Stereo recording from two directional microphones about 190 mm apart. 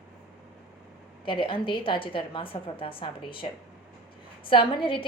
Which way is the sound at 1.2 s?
25° left (ahead or behind).